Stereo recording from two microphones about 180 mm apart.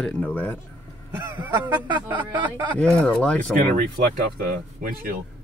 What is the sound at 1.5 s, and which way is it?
Honk, 25° right (ahead or behind).